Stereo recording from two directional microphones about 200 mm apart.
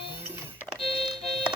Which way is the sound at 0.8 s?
30° left (ahead or behind).